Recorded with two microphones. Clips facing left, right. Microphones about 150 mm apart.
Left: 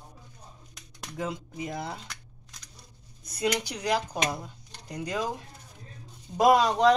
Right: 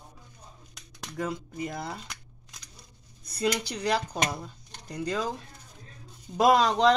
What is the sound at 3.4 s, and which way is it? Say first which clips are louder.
Speech: right 1 dB; 15° left (ahead or behind).